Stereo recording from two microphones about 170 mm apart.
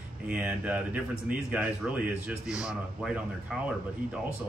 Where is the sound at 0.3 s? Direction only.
10° right (ahead or behind).